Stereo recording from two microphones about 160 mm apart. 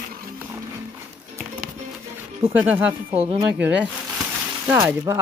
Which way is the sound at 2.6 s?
10° right (ahead or behind).